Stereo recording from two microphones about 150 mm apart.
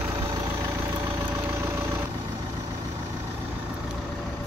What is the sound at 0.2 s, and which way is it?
Vehicle, 20° right (ahead or behind).